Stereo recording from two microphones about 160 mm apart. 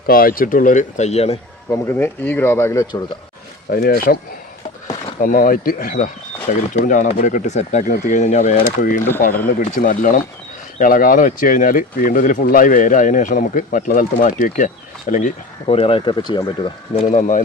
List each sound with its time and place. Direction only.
0.1 s speech: 65° left (ahead or behind); by 1.4 s 40° left (ahead or behind)
1.7 s speech: 15° left (ahead or behind)
3.7 s speech: 70° left (ahead or behind)
5.2 s speech: 60° left (ahead or behind)
15.7 s speech: 35° left (ahead or behind)
16.9 s speech: 55° left (ahead or behind)